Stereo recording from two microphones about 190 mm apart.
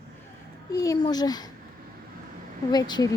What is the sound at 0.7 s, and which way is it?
Speech, 20° left (ahead or behind).